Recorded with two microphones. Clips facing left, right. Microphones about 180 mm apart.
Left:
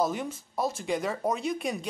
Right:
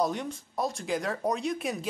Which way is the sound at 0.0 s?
5° left (ahead or behind).